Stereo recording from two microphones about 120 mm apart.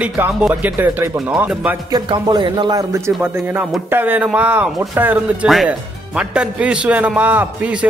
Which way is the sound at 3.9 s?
15° right (ahead or behind).